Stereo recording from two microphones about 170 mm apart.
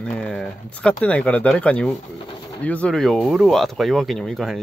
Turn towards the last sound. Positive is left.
turn(degrees=0)  # may be behind; listen again after turning